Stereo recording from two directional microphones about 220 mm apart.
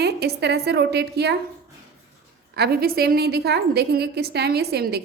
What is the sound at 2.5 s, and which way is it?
A woman's voice, 45° right (ahead or behind).